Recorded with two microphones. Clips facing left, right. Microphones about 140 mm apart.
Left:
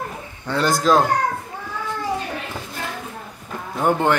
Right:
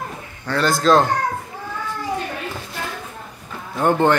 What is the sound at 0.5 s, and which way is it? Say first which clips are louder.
Speech: right 1 dB; 20° left (ahead or behind).